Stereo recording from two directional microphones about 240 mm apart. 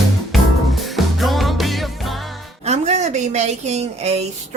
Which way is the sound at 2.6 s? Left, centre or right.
Right.